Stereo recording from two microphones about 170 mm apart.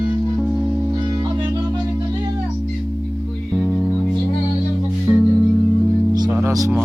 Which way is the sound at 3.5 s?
5° left (ahead or behind).